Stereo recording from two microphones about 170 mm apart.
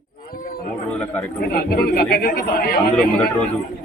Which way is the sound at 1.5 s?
70° left (ahead or behind).